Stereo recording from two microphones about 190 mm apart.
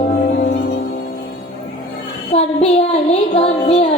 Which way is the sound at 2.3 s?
30° left (ahead or behind).